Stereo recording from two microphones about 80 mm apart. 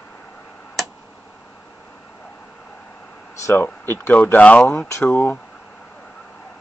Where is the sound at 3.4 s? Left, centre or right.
Left.